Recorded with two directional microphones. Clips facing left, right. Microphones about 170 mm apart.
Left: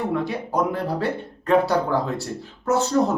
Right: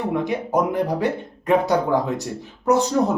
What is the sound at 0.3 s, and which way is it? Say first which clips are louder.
Speech: right 3 dB; 20° right (ahead or behind).